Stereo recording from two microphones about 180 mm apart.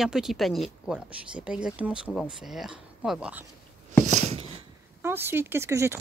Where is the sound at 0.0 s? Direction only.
Centre (ahead or behind).